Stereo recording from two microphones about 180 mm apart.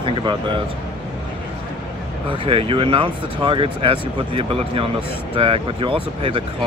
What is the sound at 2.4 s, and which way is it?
Speech, 30° right (ahead or behind).